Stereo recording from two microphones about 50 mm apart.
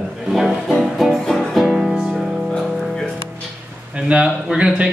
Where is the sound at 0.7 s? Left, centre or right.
Centre.